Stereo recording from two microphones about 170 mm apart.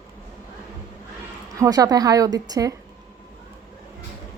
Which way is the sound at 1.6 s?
20° right (ahead or behind).